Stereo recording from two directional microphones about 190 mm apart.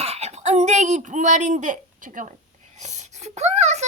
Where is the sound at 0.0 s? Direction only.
35° right (ahead or behind).